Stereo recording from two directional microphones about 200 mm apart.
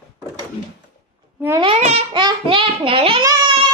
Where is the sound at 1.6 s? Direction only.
30° right (ahead or behind).